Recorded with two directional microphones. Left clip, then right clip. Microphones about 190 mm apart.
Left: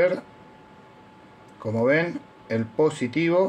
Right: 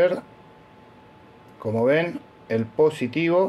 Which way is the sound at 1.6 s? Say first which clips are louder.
Right 1 dB; 15° right (ahead or behind).